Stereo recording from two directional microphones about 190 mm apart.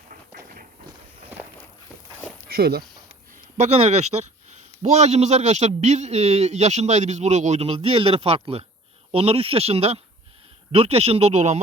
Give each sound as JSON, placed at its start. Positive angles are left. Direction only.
{"t": 0.1, "sound": "a sound", "side_deg": -45}
{"t": 2.5, "sound": "speech", "side_deg": -55}
{"t": 3.6, "sound": "speech", "side_deg": -35}